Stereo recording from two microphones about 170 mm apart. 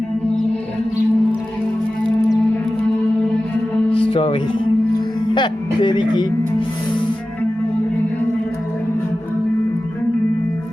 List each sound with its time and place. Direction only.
4.1 s music: 35° left (ahead or behind)
5.3 s speech: 30° left (ahead or behind)